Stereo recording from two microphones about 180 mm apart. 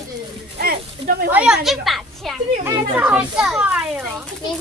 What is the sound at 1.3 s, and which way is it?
A child's voice, 5° right (ahead or behind).